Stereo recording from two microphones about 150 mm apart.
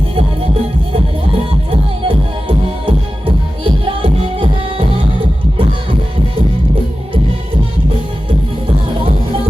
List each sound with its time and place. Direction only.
1.7 s music: 35° right (ahead or behind)